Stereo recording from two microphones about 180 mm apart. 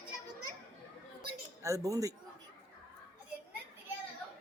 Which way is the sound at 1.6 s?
15° right (ahead or behind).